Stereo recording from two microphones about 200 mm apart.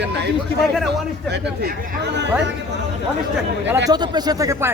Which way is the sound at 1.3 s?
60° right (ahead or behind).